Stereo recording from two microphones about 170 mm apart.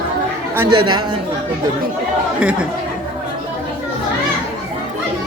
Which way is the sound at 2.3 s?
5° right (ahead or behind).